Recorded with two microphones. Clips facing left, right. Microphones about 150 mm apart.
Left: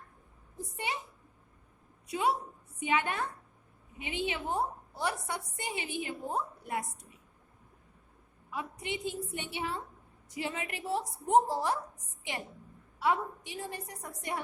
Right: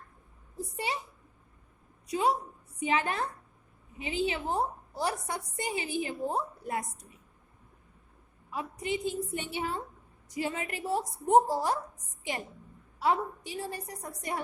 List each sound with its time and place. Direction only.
0.5 s a woman's voice: 35° right (ahead or behind)
2.0 s a woman's voice: 35° right (ahead or behind)
8.4 s a woman's voice: 40° right (ahead or behind)
13.0 s a woman's voice: 35° right (ahead or behind)